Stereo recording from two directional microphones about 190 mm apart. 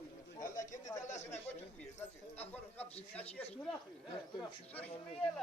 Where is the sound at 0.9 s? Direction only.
40° left (ahead or behind).